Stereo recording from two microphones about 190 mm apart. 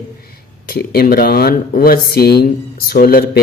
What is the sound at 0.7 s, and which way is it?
Speech, 55° left (ahead or behind).